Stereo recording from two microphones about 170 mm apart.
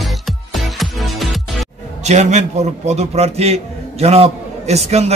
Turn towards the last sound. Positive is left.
turn(degrees=-40)  # may be behind; listen again after turning